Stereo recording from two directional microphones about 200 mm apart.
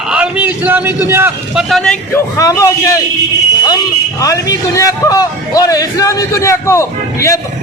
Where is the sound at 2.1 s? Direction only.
15° left (ahead or behind).